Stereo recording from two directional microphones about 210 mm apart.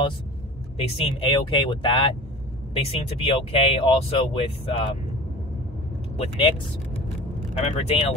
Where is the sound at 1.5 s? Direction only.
25° left (ahead or behind).